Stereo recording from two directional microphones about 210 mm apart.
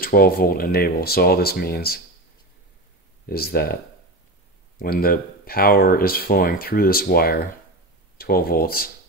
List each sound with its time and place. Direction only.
0.0 s speech: 45° left (ahead or behind)
3.3 s speech: 45° left (ahead or behind)
4.7 s speech: 45° left (ahead or behind)